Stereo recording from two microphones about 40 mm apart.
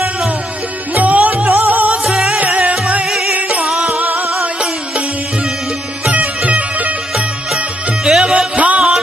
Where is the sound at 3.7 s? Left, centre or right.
Right.